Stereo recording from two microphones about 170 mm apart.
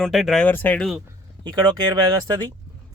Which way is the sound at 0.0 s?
Centre (ahead or behind).